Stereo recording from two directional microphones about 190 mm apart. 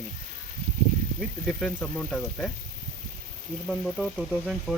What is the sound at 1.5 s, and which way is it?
Speech, centre (ahead or behind).